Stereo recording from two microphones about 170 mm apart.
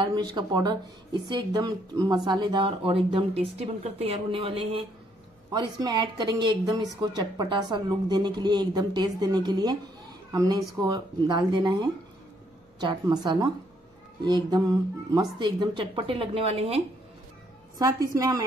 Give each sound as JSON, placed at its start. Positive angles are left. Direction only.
{"t": 0.3, "sound": "a woman's voice", "side_deg": -25}
{"t": 17.7, "sound": "a woman's voice", "side_deg": -20}